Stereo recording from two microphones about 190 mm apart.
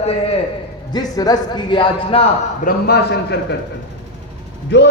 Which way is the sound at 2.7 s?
55° left (ahead or behind).